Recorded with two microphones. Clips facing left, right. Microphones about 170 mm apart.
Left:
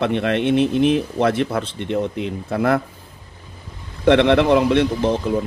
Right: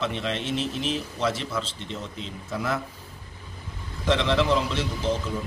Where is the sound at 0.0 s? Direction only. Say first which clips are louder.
Left 10 dB; 60° left (ahead or behind).